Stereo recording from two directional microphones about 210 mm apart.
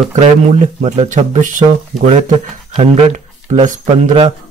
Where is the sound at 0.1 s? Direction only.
35° right (ahead or behind).